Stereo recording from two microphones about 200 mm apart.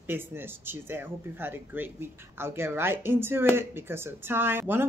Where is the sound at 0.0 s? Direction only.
10° right (ahead or behind).